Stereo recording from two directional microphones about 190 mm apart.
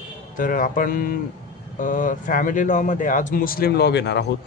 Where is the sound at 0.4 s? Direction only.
45° left (ahead or behind); by 4.3 s 65° left (ahead or behind).